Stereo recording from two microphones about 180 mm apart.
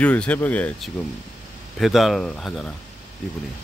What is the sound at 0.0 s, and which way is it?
Speech, 5° left (ahead or behind).